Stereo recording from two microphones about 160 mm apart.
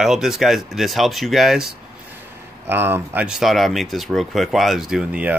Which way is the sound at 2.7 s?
15° right (ahead or behind).